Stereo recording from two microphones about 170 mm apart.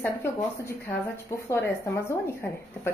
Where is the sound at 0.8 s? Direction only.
15° left (ahead or behind).